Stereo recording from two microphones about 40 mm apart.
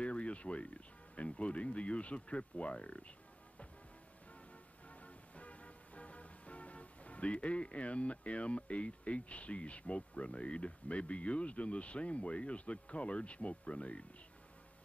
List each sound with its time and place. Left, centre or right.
0.0 s speech: left
4.8 s music: left